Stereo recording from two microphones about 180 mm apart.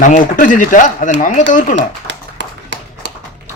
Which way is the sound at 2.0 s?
85° right.